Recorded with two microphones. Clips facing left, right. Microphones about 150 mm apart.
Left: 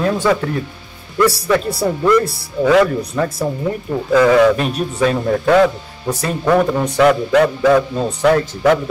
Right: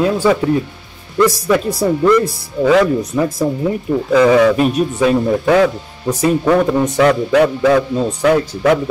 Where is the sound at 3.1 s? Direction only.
10° right (ahead or behind).